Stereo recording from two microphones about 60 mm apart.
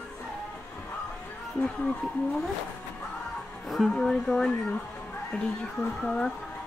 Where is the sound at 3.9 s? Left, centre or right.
Centre.